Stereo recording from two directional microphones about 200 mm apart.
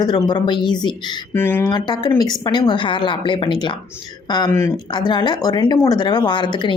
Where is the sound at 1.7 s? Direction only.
20° left (ahead or behind).